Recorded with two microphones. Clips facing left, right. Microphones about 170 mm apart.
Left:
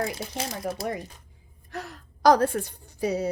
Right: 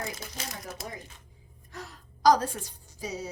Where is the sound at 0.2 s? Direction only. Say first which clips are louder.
Left 8 dB; 30° left (ahead or behind).